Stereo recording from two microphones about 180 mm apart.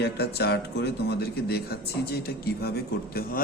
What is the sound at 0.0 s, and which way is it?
Speech, 65° left (ahead or behind).